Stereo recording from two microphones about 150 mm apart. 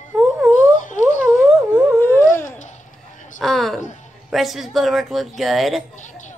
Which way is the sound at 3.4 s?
Centre (ahead or behind).